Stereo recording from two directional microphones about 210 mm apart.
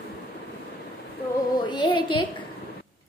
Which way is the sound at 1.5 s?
20° left (ahead or behind).